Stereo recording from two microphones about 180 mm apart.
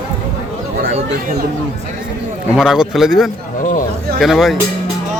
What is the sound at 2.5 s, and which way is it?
Speech, 5° right (ahead or behind).